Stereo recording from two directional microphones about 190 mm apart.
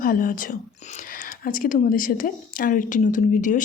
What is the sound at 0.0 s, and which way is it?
Speech, 45° left (ahead or behind).